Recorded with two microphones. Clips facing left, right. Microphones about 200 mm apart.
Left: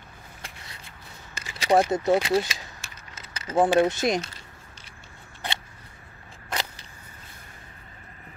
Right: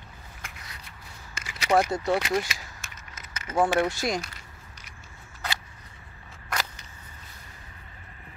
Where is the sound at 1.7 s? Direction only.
20° left (ahead or behind).